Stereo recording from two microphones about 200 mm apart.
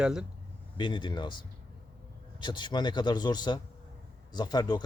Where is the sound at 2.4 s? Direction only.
25° left (ahead or behind).